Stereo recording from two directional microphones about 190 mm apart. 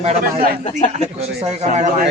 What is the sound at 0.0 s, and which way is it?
Speech, 40° right (ahead or behind).